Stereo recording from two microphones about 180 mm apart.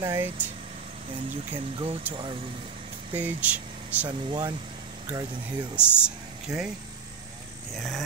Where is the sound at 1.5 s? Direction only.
30° right (ahead or behind).